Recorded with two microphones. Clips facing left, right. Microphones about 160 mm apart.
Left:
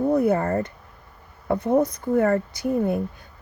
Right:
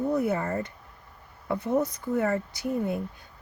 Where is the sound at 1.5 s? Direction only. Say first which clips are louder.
Left 6 dB; 60° left (ahead or behind).